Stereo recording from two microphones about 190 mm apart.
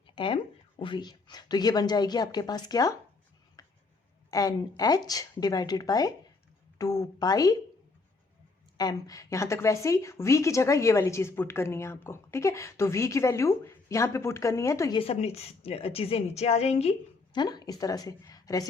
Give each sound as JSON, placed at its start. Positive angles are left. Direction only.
{"t": 0.2, "sound": "a woman's voice", "side_deg": 25}
{"t": 3.6, "sound": "a sound", "side_deg": 20}
{"t": 4.3, "sound": "a woman's voice", "side_deg": 20}
{"t": 8.8, "sound": "a woman's voice", "side_deg": 20}
{"t": 15.0, "sound": "a woman's voice", "side_deg": 30}
{"t": 17.3, "sound": "a woman's voice", "side_deg": 20}